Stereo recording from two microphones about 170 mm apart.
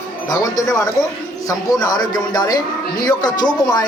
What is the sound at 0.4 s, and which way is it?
Speech, 20° left (ahead or behind).